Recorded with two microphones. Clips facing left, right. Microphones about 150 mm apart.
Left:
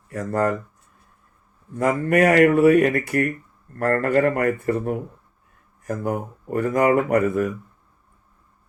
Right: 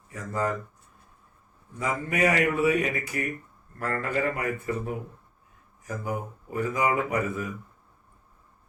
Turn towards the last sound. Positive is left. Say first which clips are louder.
# left 9 dB
turn(degrees=55)  # may be behind; listen again after turning